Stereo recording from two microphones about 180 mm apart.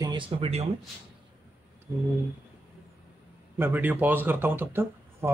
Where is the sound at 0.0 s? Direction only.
25° right (ahead or behind).